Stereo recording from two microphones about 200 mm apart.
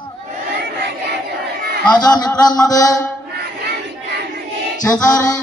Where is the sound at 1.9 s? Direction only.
20° left (ahead or behind).